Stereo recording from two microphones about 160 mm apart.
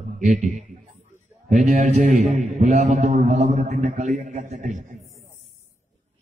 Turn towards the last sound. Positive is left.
turn(degrees=-50)  # may be behind; listen again after turning